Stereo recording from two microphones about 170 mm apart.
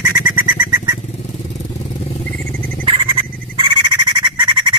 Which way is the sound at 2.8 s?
30° right (ahead or behind).